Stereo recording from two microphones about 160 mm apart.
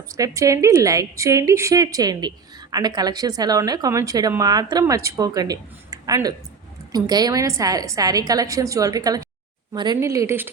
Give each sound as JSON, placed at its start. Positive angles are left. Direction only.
{"t": 0.2, "sound": "a woman's voice", "side_deg": -20}